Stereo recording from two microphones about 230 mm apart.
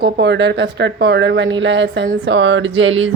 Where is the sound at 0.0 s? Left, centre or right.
Right.